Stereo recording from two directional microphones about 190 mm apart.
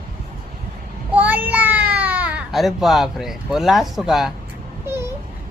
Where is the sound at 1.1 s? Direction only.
10° right (ahead or behind).